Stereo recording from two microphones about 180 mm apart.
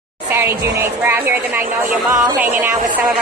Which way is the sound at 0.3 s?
15° right (ahead or behind).